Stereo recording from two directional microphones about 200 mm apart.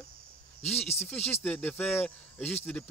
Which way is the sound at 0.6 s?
30° left (ahead or behind).